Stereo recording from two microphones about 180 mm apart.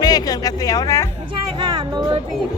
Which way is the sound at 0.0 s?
20° left (ahead or behind).